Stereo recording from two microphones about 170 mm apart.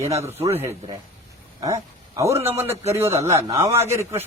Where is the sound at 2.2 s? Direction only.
15° right (ahead or behind).